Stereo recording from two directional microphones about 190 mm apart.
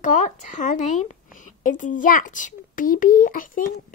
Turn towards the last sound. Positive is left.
turn(degrees=45)  # may be behind; listen again after turning